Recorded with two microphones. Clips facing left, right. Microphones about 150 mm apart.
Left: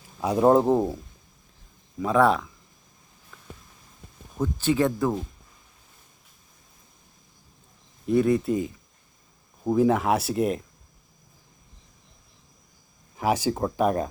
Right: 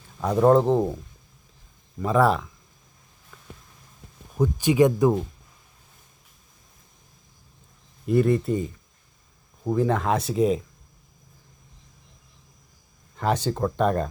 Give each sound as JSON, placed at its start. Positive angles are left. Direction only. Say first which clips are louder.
{"t": 0.2, "sound": "speech", "louder": "right 1 dB", "side_deg": 10}
{"t": 2.0, "sound": "speech", "louder": "even", "side_deg": 0}
{"t": 4.4, "sound": "speech", "louder": "right 4 dB", "side_deg": -15}
{"t": 8.0, "sound": "speech", "louder": "even", "side_deg": 0}
{"t": 13.1, "sound": "speech", "louder": "even", "side_deg": 10}